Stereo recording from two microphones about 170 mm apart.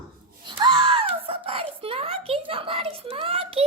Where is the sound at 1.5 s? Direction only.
35° right (ahead or behind).